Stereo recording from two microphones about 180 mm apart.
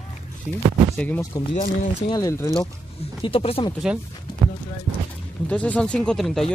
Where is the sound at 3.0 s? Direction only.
30° left (ahead or behind).